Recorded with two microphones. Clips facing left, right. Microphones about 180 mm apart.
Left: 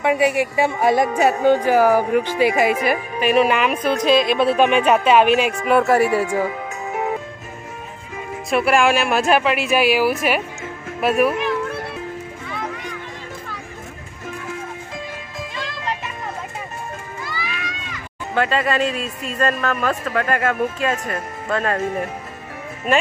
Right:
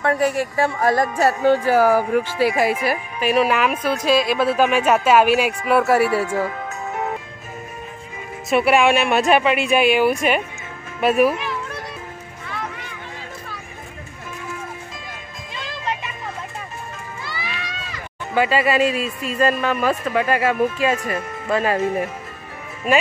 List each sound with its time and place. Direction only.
0.0 s speech: 5° left (ahead or behind)
1.1 s speech: 15° left (ahead or behind)
2.9 s speech: 5° right (ahead or behind)
6.0 s music: 15° left (ahead or behind)
8.5 s speech: centre (ahead or behind)
17.3 s crowd: 30° right (ahead or behind)
18.3 s speech: 5° right (ahead or behind)